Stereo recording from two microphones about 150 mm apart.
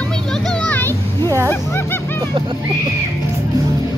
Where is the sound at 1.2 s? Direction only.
20° right (ahead or behind).